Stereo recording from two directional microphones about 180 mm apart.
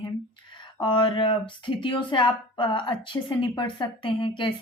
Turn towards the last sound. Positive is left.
turn(degrees=25)  # may be behind; listen again after turning